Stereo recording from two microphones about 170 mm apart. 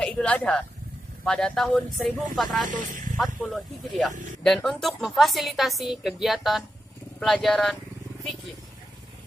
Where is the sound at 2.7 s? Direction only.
50° right (ahead or behind).